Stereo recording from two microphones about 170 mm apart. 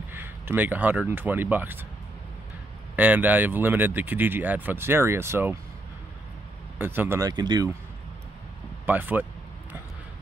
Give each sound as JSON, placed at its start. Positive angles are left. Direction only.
{"t": 0.1, "sound": "speech", "side_deg": -10}
{"t": 3.0, "sound": "speech", "side_deg": -10}
{"t": 6.8, "sound": "speech", "side_deg": -10}
{"t": 8.8, "sound": "speech", "side_deg": -10}